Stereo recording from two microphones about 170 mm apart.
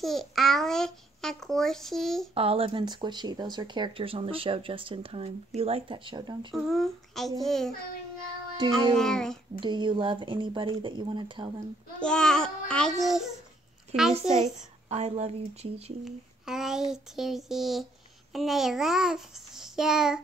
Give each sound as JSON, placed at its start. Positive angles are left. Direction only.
{"t": 0.0, "sound": "a child's voice", "side_deg": 0}
{"t": 2.3, "sound": "speech", "side_deg": -35}
{"t": 6.5, "sound": "a child's voice", "side_deg": 0}
{"t": 8.9, "sound": "a child's voice", "side_deg": 5}
{"t": 9.6, "sound": "speech", "side_deg": -30}
{"t": 12.0, "sound": "a child's voice", "side_deg": 5}
{"t": 14.9, "sound": "speech", "side_deg": -40}
{"t": 16.0, "sound": "a child's voice", "side_deg": -5}